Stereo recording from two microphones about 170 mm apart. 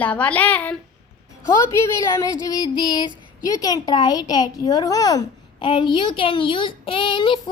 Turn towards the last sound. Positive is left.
turn(degrees=30)  # may be behind; listen again after turning